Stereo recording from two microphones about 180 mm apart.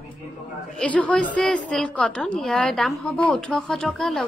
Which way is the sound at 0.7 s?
5° left (ahead or behind).